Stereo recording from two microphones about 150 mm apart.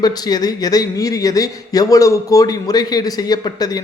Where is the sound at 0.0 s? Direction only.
25° left (ahead or behind).